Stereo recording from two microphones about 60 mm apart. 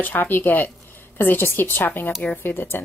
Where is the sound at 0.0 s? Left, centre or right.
Left.